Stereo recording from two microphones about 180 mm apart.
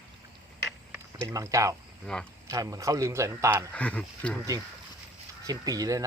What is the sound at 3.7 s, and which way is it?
Speech, 10° left (ahead or behind).